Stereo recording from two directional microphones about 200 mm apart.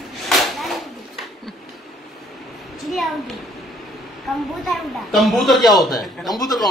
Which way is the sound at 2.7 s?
Centre (ahead or behind).